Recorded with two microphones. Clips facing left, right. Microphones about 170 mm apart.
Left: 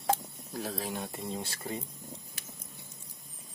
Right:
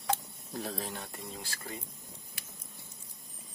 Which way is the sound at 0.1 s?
40° left (ahead or behind).